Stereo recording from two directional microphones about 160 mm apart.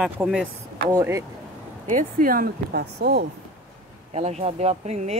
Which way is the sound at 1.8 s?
55° right (ahead or behind).